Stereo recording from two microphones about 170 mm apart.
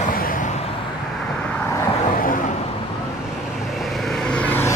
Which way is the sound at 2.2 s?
55° left (ahead or behind).